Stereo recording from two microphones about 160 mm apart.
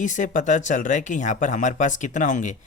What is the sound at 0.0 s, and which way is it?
Speech, 50° left (ahead or behind).